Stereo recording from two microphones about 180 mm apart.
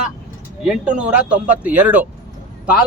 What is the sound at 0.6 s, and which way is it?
Speech, 5° right (ahead or behind).